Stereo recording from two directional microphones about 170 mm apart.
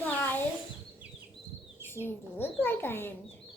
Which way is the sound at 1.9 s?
15° left (ahead or behind).